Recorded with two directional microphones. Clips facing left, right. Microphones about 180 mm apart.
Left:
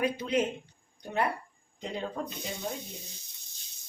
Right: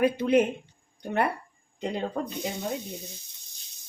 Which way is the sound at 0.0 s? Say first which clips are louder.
Right 7 dB; 60° right (ahead or behind).